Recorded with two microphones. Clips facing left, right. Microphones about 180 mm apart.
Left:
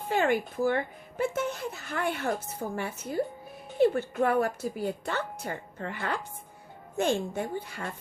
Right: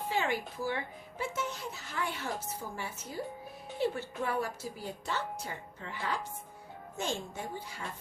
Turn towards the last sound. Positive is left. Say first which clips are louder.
# left 7 dB
turn(degrees=60)  # may be behind; listen again after turning